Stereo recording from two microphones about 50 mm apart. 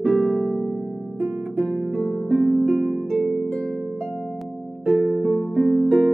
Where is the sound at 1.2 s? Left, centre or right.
Centre.